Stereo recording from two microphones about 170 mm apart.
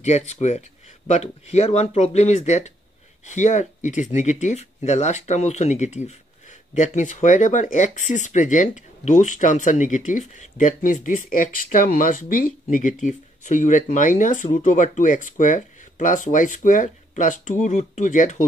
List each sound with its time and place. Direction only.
0.0 s speech: 40° left (ahead or behind)